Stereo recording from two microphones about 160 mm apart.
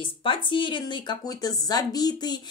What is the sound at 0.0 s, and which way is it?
Speech, 30° left (ahead or behind).